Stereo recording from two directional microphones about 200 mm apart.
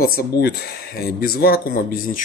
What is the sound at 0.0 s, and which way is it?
Speech, 50° left (ahead or behind).